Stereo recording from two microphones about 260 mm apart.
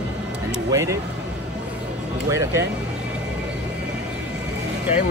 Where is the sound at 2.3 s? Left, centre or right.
Centre.